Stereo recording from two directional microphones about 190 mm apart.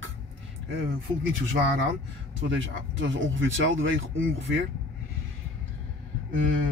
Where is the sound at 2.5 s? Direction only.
85° right.